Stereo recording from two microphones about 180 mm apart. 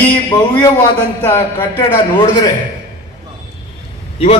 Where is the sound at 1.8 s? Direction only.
20° left (ahead or behind).